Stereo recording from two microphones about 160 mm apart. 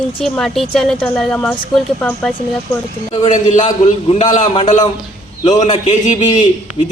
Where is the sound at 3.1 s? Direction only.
45° left (ahead or behind).